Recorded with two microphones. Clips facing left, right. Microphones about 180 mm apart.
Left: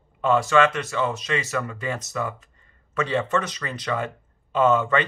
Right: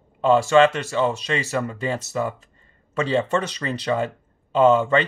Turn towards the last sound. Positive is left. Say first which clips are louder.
# right 3 dB
turn(degrees=-30)  # may be behind; listen again after turning